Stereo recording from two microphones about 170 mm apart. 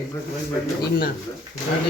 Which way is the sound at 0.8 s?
65° left (ahead or behind).